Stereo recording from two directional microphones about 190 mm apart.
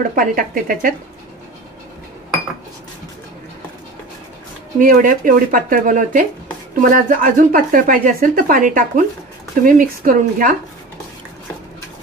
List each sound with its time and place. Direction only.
0.1 s speech: 45° right (ahead or behind)
4.7 s speech: 45° right (ahead or behind)